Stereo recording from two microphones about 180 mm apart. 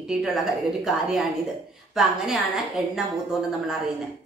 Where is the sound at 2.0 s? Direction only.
Centre (ahead or behind).